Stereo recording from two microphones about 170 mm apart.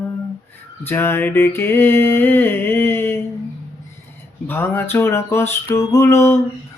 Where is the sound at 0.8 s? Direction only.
15° left (ahead or behind).